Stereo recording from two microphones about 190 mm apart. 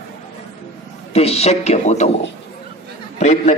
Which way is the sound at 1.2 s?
35° left (ahead or behind).